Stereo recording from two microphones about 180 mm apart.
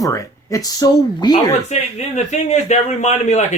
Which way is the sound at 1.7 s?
40° left (ahead or behind).